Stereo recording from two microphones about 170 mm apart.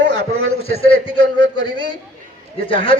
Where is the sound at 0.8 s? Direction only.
30° left (ahead or behind).